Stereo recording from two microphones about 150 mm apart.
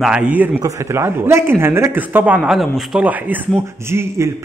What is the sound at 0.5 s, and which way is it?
Speech, 20° right (ahead or behind).